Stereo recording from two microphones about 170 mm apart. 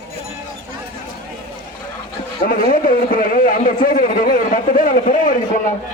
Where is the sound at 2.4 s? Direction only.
55° left (ahead or behind).